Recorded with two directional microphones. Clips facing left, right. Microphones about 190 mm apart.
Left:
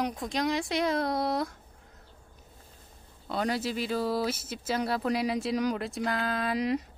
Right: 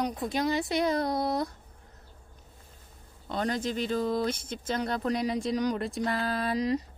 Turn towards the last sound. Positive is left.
turn(degrees=0)  # may be behind; listen again after turning